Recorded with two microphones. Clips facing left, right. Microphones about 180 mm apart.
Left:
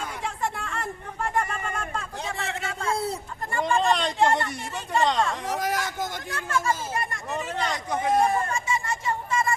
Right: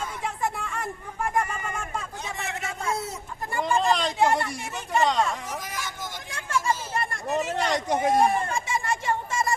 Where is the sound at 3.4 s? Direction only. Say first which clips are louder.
Even; 5° right (ahead or behind).